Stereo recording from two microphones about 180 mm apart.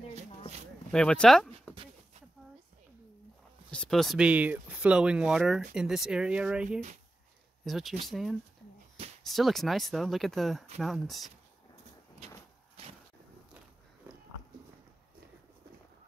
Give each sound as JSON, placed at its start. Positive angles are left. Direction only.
{"t": 0.9, "sound": "speech", "side_deg": 5}
{"t": 3.7, "sound": "speech", "side_deg": 5}
{"t": 12.2, "sound": "a sound", "side_deg": -35}